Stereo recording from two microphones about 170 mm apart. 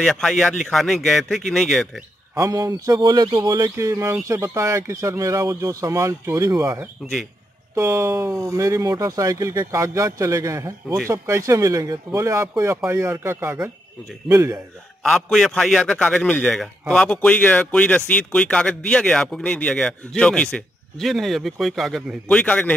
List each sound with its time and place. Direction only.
0.0 s a man's voice: 5° left (ahead or behind)
2.3 s speech: 20° right (ahead or behind)
15.0 s a man's voice: 5° left (ahead or behind)